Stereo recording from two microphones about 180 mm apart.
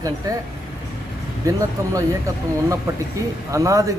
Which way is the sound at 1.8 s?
15° right (ahead or behind).